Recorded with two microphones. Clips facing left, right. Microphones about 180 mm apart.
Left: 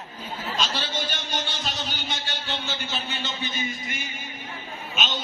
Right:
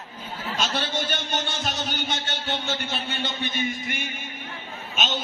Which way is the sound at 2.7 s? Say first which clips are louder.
Right 2 dB; 55° right (ahead or behind).